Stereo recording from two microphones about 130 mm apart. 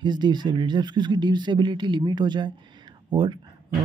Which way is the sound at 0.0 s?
35° right (ahead or behind).